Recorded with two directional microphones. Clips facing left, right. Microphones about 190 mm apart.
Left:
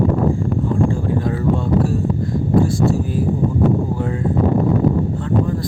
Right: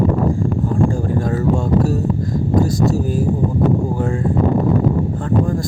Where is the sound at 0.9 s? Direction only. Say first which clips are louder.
Right 1 dB; 45° right (ahead or behind).